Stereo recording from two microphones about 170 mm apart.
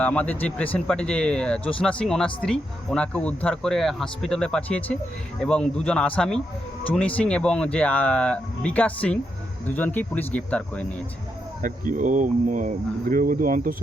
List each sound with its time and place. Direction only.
0.0 s speech: 10° left (ahead or behind)
11.6 s speech: 50° right (ahead or behind)